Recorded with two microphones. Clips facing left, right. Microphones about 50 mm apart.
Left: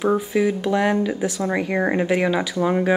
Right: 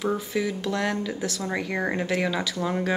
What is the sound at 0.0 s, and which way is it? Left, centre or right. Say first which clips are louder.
A woman's voice: left 7 dB; left.